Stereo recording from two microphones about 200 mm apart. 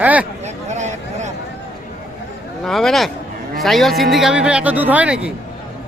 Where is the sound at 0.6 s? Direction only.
35° right (ahead or behind).